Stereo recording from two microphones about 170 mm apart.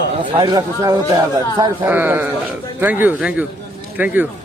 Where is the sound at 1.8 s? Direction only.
10° right (ahead or behind).